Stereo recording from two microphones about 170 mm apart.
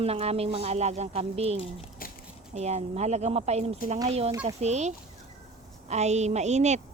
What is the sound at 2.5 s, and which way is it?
Speech, 40° right (ahead or behind).